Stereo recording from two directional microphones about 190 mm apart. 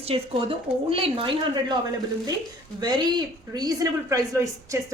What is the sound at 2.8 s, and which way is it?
Speech, 25° right (ahead or behind).